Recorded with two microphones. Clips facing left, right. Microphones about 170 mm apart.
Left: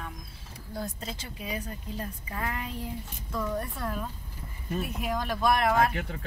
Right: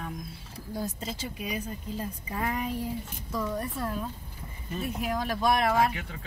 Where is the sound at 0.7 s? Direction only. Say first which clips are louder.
Right 2 dB; 5° right (ahead or behind).